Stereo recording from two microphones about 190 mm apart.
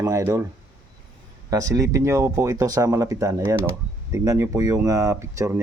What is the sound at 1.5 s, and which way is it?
A man's voice, 15° right (ahead or behind).